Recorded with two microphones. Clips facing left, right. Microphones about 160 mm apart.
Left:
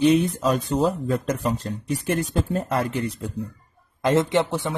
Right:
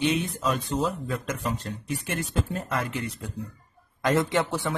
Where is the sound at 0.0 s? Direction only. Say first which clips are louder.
Left 7 dB; 35° left (ahead or behind).